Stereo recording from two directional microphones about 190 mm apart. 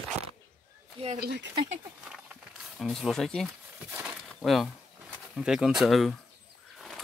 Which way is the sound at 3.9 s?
5° right (ahead or behind).